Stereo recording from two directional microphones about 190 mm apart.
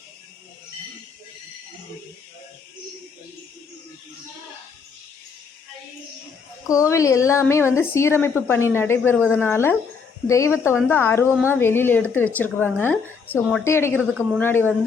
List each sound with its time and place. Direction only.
6.7 s speech: 15° left (ahead or behind)